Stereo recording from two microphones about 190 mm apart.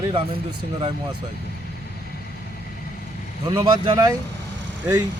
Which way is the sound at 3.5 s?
20° right (ahead or behind).